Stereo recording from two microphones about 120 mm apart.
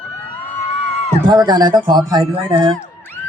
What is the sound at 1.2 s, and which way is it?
Speech, 35° right (ahead or behind).